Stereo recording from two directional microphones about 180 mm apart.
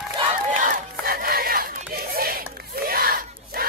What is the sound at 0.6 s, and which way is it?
Battle cry, 55° right (ahead or behind).